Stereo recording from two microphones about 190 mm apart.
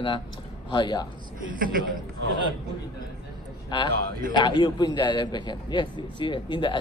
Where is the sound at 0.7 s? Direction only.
25° left (ahead or behind).